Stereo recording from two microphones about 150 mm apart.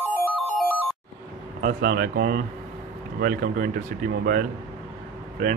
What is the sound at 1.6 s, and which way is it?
Speech, 90° right.